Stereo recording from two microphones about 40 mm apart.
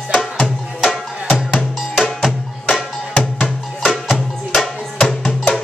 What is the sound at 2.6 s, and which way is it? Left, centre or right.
Music, left.